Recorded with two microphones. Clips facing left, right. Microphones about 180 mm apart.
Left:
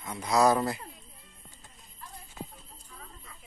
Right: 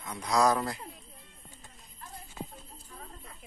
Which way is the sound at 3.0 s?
50° right (ahead or behind).